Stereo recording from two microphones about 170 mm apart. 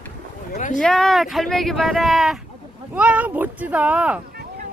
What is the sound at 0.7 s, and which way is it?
Speech, 5° left (ahead or behind).